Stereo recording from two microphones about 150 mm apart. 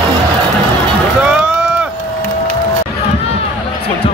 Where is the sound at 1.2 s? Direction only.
5° right (ahead or behind).